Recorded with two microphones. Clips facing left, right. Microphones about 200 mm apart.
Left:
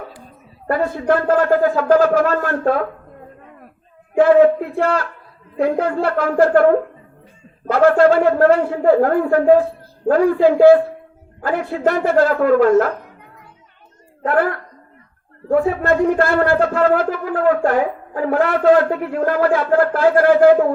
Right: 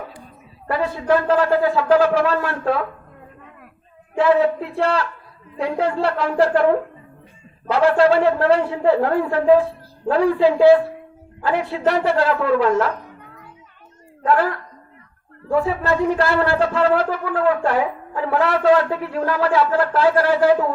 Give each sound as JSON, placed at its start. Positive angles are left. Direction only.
{"t": 0.7, "sound": "speech", "side_deg": 50}
{"t": 4.2, "sound": "a woman's voice", "side_deg": 50}
{"t": 14.3, "sound": "speech", "side_deg": 55}